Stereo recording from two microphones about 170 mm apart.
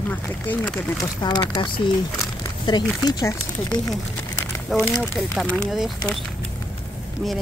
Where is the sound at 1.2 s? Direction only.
25° left (ahead or behind).